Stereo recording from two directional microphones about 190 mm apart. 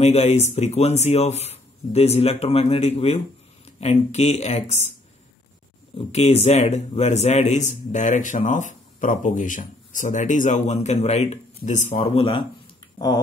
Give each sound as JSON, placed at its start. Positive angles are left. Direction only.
{"t": 0.0, "sound": "a man's voice", "side_deg": 35}
{"t": 5.9, "sound": "a man's voice", "side_deg": 35}